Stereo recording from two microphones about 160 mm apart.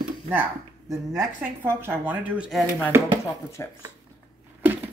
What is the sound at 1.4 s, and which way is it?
A woman's voice, 15° right (ahead or behind).